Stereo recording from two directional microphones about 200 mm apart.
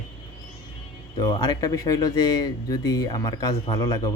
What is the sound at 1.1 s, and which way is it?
Speech, 20° left (ahead or behind).